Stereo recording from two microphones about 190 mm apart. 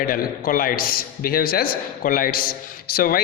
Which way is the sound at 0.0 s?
50° left (ahead or behind).